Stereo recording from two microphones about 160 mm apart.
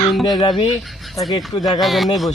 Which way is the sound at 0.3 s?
30° left (ahead or behind).